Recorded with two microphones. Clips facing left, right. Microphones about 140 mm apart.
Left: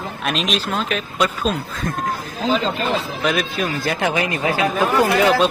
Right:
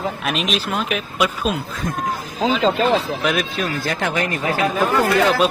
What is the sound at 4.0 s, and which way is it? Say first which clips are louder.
Speech: left 2 dB; 15° left (ahead or behind).